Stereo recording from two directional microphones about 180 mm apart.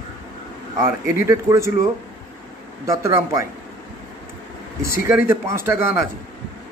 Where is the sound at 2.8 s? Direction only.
15° right (ahead or behind).